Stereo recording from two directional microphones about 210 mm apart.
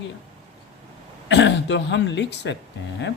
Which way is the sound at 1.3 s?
55° left (ahead or behind).